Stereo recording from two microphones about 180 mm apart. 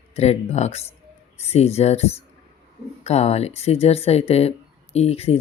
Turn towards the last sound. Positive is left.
turn(degrees=35)  # may be behind; listen again after turning